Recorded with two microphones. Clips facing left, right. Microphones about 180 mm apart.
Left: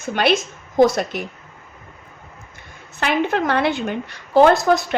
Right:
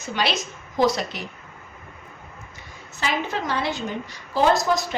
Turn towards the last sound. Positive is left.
turn(degrees=60)  # may be behind; listen again after turning